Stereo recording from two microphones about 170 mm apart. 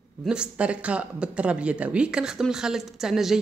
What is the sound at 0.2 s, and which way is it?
Speech, 5° right (ahead or behind).